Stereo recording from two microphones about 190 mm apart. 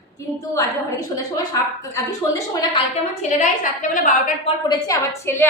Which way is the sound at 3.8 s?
45° left (ahead or behind).